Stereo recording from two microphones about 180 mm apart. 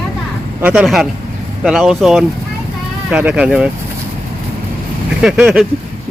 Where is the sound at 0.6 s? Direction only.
5° right (ahead or behind).